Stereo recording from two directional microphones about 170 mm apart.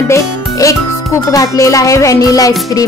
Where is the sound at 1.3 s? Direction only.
20° left (ahead or behind).